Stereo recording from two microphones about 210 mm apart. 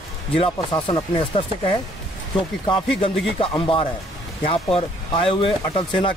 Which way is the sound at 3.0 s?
25° left (ahead or behind).